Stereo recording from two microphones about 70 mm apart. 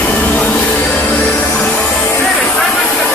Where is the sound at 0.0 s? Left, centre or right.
Left.